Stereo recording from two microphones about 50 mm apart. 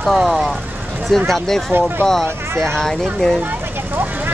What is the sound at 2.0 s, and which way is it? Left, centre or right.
Speech, centre.